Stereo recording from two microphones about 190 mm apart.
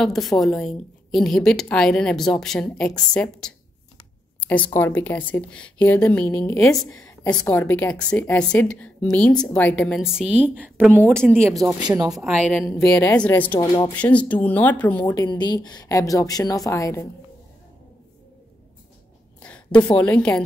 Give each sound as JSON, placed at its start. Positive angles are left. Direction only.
{"t": 0.0, "sound": "a woman's voice", "side_deg": 0}
{"t": 4.7, "sound": "a woman's voice", "side_deg": 10}
{"t": 11.6, "sound": "speech", "side_deg": -15}
{"t": 12.1, "sound": "a woman's voice", "side_deg": 0}
{"t": 13.6, "sound": "speech", "side_deg": 20}
{"t": 13.9, "sound": "a woman's voice", "side_deg": 10}
{"t": 15.1, "sound": "speech", "side_deg": 20}
{"t": 19.4, "sound": "a woman's voice", "side_deg": 5}